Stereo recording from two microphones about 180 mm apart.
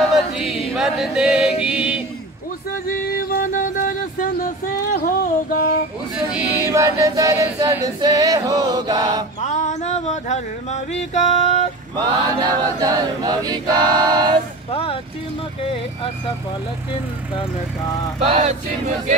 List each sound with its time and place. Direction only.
0.1 s choir: centre (ahead or behind)
2.9 s music: 55° left (ahead or behind)
4.9 s a sound: 55° left (ahead or behind)
6.1 s choir: 10° right (ahead or behind)
9.4 s music: 40° left (ahead or behind)
12.1 s choir: 20° right (ahead or behind)
14.7 s music: 30° left (ahead or behind)
18.2 s choir: 35° right (ahead or behind)